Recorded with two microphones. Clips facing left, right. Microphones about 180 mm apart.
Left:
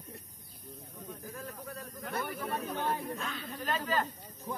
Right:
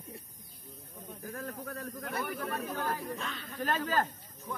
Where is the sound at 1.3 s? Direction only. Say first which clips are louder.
Right 6 dB; 55° right (ahead or behind).